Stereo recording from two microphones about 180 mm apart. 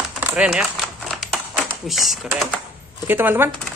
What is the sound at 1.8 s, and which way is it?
Speech, centre (ahead or behind).